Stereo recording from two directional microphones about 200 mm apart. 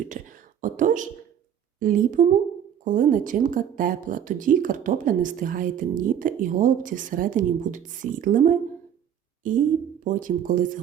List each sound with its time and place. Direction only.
0.1 s a woman's voice: 40° right (ahead or behind)